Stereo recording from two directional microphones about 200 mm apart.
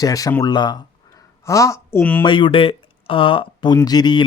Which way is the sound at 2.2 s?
25° left (ahead or behind).